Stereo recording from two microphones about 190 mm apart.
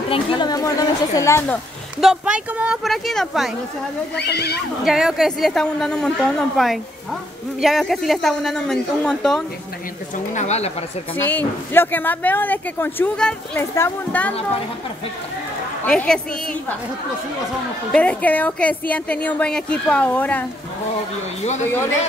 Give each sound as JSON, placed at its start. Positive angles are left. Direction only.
{"t": 0.1, "sound": "speech", "side_deg": 25}
{"t": 2.0, "sound": "a woman's voice", "side_deg": -5}
{"t": 4.1, "sound": "speech", "side_deg": 60}
{"t": 4.8, "sound": "a woman's voice", "side_deg": 0}
{"t": 10.3, "sound": "speech", "side_deg": 35}
{"t": 11.1, "sound": "speech", "side_deg": 10}
{"t": 15.8, "sound": "a woman's voice", "side_deg": 5}
{"t": 17.9, "sound": "speech", "side_deg": 5}